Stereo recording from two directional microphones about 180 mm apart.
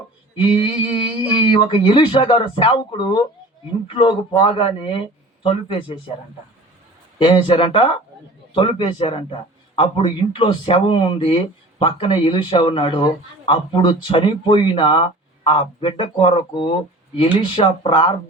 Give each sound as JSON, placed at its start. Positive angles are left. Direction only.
{"t": 0.3, "sound": "a man's voice", "side_deg": 30}
{"t": 7.2, "sound": "a man's voice", "side_deg": 30}